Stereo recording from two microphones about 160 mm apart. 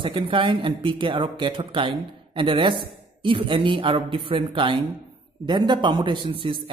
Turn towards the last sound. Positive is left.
turn(degrees=-35)  # may be behind; listen again after turning